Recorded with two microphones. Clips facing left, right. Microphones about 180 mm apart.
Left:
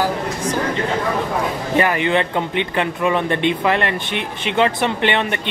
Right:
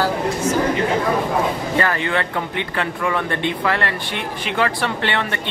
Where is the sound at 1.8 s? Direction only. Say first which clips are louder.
Left 5 dB; 20° left (ahead or behind).